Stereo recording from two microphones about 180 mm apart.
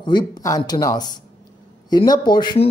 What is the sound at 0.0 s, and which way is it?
A man's voice, 25° left (ahead or behind).